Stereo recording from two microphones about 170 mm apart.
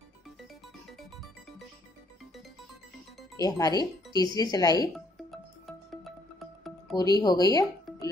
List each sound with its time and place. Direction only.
3.3 s speech: 20° left (ahead or behind)
4.9 s music: centre (ahead or behind)
7.0 s speech: 25° left (ahead or behind)